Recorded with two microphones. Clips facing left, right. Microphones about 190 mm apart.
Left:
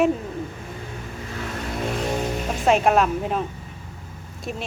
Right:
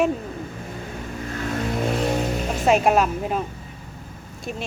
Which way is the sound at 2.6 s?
5° right (ahead or behind).